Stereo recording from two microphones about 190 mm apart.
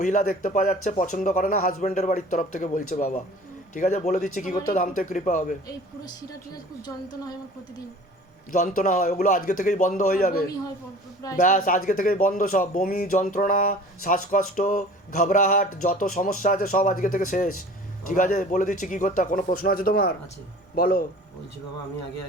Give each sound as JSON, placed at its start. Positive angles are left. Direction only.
{"t": 0.0, "sound": "speech", "side_deg": 45}
{"t": 6.8, "sound": "a woman's voice", "side_deg": 20}
{"t": 8.5, "sound": "speech", "side_deg": 40}